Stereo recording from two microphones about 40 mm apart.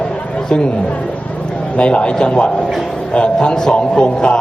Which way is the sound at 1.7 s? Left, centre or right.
Left.